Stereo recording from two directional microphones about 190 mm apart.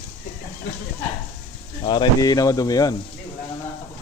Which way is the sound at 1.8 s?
20° left (ahead or behind).